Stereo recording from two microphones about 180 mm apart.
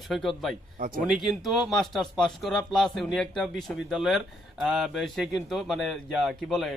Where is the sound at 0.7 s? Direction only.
50° right (ahead or behind).